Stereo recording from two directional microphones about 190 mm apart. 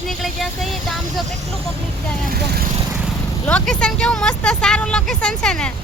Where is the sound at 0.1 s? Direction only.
Centre (ahead or behind).